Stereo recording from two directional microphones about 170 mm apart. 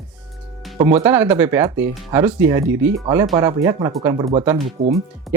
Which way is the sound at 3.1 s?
25° right (ahead or behind).